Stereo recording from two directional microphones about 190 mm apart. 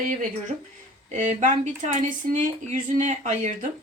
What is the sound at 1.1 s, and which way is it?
Speech, 40° right (ahead or behind).